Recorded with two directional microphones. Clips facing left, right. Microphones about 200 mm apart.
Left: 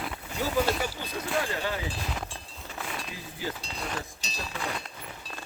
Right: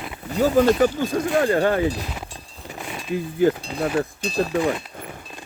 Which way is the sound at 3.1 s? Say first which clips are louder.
Right 17 dB; 55° right (ahead or behind).